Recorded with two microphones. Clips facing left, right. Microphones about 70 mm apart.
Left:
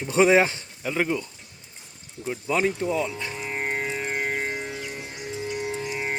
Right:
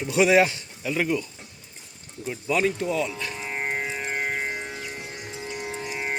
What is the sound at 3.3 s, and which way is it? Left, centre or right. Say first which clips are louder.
Music: left 1 dB; centre.